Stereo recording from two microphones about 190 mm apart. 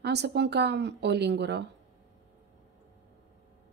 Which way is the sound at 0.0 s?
60° right (ahead or behind).